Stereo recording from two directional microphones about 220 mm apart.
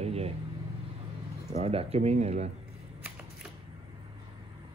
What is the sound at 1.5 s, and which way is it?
Speech, 25° right (ahead or behind).